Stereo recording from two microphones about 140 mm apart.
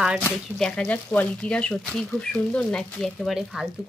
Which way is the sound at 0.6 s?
5° left (ahead or behind).